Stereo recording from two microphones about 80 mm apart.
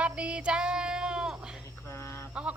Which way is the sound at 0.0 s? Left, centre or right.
Centre.